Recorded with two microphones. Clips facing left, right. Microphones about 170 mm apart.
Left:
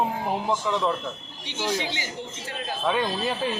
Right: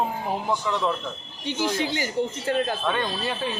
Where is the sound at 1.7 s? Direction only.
45° right (ahead or behind).